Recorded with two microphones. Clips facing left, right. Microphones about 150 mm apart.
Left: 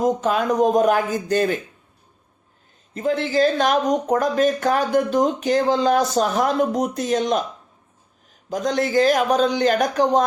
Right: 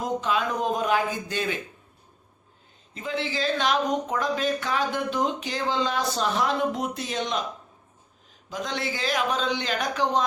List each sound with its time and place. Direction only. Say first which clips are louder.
0.0 s speech: left 6 dB; 45° left (ahead or behind)
2.9 s speech: left 9 dB; 45° left (ahead or behind)
8.4 s speech: left 9 dB; 45° left (ahead or behind)